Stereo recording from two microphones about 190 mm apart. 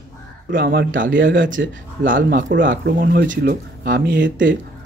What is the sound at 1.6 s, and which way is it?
Speech, 60° right (ahead or behind).